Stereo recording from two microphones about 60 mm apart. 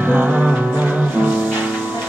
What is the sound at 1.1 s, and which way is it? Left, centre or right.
Music, right.